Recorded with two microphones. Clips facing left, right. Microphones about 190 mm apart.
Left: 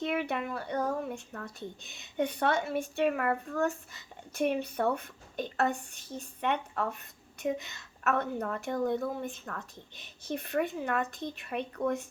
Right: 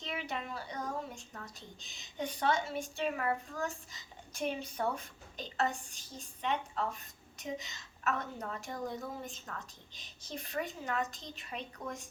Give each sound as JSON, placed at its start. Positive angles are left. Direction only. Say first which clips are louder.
{"t": 0.0, "sound": "speech", "louder": "left 8 dB", "side_deg": 60}